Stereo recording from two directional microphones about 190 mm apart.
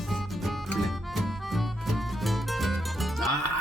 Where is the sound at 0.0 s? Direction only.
Centre (ahead or behind).